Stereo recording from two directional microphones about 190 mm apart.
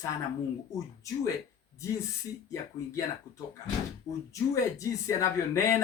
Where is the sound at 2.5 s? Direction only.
15° left (ahead or behind).